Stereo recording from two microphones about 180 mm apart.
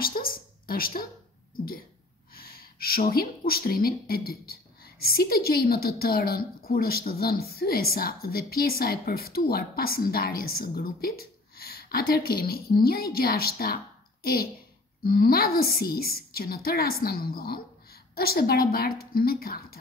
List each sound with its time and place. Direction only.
0.0 s a woman's voice: 50° left (ahead or behind)
2.3 s a woman's voice: 55° left (ahead or behind)